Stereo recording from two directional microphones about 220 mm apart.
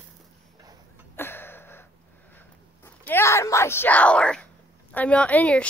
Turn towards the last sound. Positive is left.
turn(degrees=5)  # may be behind; listen again after turning